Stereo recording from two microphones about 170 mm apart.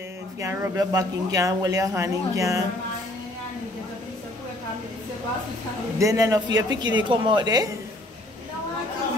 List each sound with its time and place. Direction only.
0.4 s speech: 15° right (ahead or behind)
5.9 s speech: 20° right (ahead or behind)